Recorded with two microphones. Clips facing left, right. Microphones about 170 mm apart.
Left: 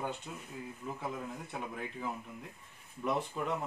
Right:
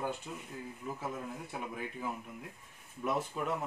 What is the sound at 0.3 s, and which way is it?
Speech, centre (ahead or behind).